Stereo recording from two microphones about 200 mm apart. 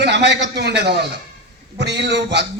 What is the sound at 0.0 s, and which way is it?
A man's voice, 55° right (ahead or behind).